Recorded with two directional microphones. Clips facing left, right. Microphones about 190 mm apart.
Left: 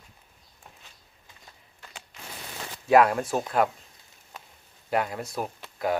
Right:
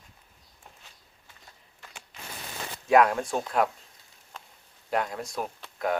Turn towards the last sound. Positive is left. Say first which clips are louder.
# left 1 dB
turn(degrees=5)  # may be behind; listen again after turning